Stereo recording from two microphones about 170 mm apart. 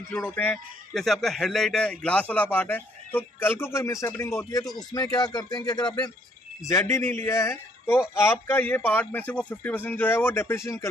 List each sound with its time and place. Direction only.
0.1 s a man's voice: 10° left (ahead or behind)